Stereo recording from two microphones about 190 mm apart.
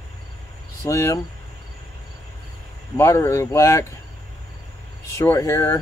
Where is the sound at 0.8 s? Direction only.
15° left (ahead or behind).